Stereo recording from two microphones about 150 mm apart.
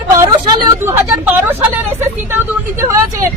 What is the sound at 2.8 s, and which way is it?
Speech, 15° right (ahead or behind).